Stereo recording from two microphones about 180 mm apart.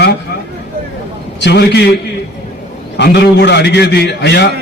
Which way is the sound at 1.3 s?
70° left (ahead or behind).